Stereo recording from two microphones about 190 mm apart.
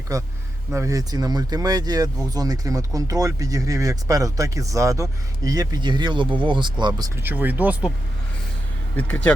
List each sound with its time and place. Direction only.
0.1 s speech: 20° right (ahead or behind)
7.2 s speech: 10° right (ahead or behind)
9.0 s speech: 10° left (ahead or behind)